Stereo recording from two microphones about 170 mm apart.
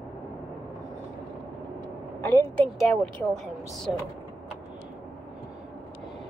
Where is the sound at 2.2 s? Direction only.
15° left (ahead or behind).